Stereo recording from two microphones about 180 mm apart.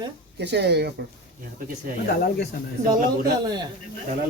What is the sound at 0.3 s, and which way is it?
Speech, 70° right (ahead or behind).